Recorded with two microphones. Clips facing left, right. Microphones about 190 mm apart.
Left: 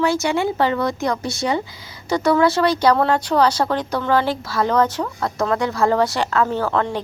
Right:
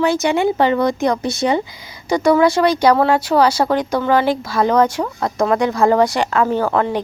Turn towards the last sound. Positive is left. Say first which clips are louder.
# right 3 dB
turn(degrees=-10)  # may be behind; listen again after turning